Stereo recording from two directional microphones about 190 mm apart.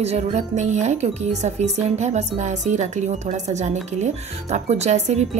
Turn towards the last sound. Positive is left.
turn(degrees=-35)  # may be behind; listen again after turning